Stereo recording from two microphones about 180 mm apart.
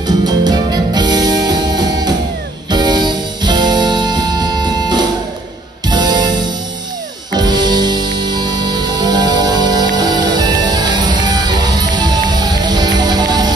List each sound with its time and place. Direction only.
0.4 s music: 20° right (ahead or behind)